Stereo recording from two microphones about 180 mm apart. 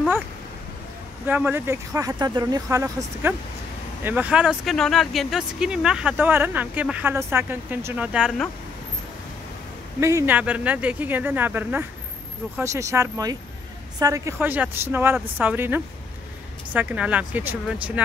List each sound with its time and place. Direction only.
1.2 s speech: 10° right (ahead or behind)
9.9 s speech: 15° right (ahead or behind)